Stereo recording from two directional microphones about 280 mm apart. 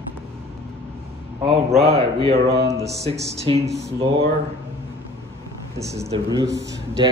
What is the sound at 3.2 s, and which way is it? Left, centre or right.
Speech, centre.